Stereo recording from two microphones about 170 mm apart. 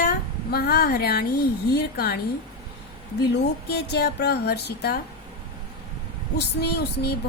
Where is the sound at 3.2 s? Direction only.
75° left (ahead or behind).